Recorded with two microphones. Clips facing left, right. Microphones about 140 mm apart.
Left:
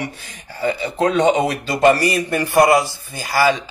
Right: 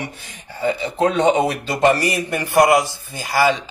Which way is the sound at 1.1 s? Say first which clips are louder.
Left 2 dB; 25° right (ahead or behind).